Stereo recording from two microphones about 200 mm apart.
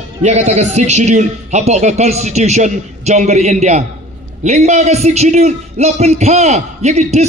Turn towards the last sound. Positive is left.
turn(degrees=-35)  # may be behind; listen again after turning